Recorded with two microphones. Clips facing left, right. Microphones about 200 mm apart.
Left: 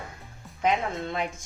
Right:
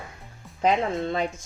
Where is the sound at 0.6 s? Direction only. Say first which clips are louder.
Right 3 dB; 35° right (ahead or behind).